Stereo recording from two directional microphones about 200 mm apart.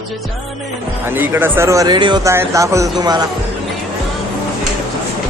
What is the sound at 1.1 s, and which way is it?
Speech, 10° right (ahead or behind).